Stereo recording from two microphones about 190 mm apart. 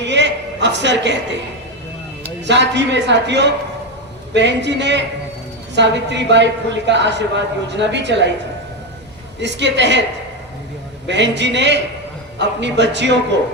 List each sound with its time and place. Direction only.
0.0 s a sound: 65° right (ahead or behind)
2.5 s a man's voice: 65° right (ahead or behind)
9.4 s a woman's voice: 65° right (ahead or behind)
11.1 s a woman's voice: 65° right (ahead or behind)